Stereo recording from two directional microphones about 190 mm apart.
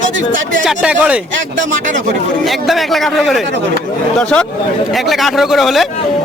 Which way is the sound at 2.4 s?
Centre (ahead or behind).